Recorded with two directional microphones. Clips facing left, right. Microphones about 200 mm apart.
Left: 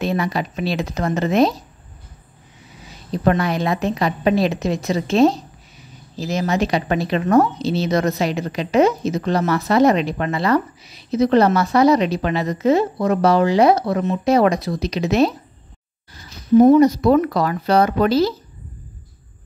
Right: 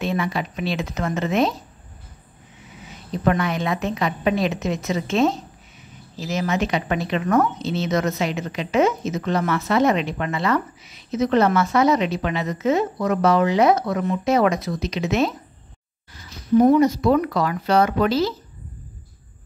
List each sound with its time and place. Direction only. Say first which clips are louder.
0.0 s a woman's voice: left 3 dB; 40° left (ahead or behind)
2.9 s a woman's voice: left 3 dB; 35° left (ahead or behind)
16.7 s a woman's voice: left 4 dB; 35° left (ahead or behind)